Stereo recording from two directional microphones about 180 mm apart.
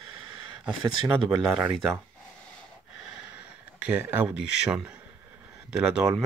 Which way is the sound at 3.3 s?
10° right (ahead or behind).